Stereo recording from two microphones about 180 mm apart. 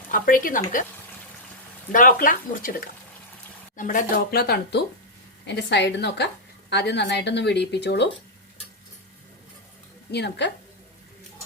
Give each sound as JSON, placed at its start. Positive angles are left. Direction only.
{"t": 0.1, "sound": "speech", "side_deg": 50}
{"t": 1.9, "sound": "speech", "side_deg": 50}
{"t": 5.5, "sound": "speech", "side_deg": 75}
{"t": 10.1, "sound": "speech", "side_deg": 70}